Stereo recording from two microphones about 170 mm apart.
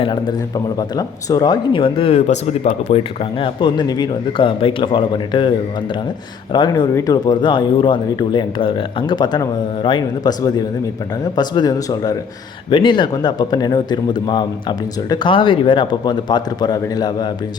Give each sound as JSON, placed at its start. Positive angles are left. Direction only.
{"t": 0.0, "sound": "speech", "side_deg": 25}